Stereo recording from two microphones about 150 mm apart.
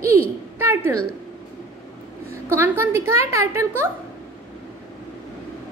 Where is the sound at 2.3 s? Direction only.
15° right (ahead or behind).